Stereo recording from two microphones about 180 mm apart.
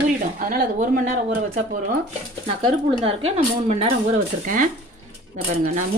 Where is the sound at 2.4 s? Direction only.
25° right (ahead or behind).